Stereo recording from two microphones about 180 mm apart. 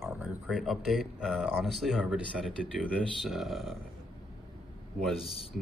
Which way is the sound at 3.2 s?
Centre (ahead or behind).